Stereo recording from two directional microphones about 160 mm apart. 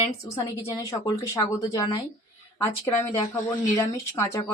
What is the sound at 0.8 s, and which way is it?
Speech, 25° left (ahead or behind).